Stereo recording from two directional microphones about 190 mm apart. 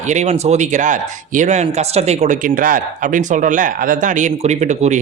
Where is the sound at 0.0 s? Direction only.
40° right (ahead or behind).